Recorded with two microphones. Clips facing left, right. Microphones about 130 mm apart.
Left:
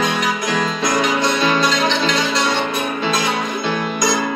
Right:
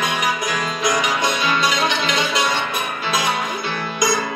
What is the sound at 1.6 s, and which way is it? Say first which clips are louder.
Music: left 3 dB; 15° right (ahead or behind).